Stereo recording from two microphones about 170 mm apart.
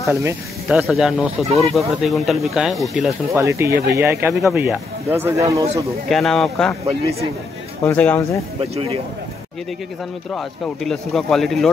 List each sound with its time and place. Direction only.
0.0 s speech: 15° right (ahead or behind)
0.7 s speech: centre (ahead or behind)
3.3 s speech: 15° right (ahead or behind)
4.4 s speech: centre (ahead or behind)
5.1 s speech: 15° right (ahead or behind)
6.0 s speech: centre (ahead or behind)
7.8 s speech: 10° left (ahead or behind)
8.5 s speech: 35° right (ahead or behind)
10.3 s speech: 5° left (ahead or behind)